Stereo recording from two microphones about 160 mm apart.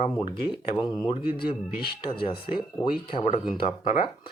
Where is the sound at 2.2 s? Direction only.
30° left (ahead or behind).